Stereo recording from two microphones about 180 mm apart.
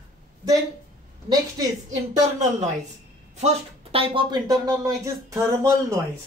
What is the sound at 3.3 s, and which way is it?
Speech, 35° right (ahead or behind).